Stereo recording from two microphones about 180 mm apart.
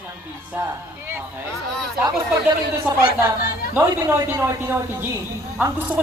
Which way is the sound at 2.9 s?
5° right (ahead or behind).